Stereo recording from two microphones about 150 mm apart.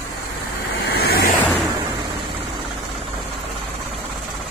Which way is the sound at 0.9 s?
90° left.